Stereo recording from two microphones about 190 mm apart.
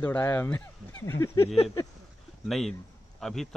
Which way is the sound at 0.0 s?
10° left (ahead or behind).